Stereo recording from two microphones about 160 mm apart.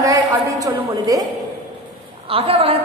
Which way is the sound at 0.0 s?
25° right (ahead or behind).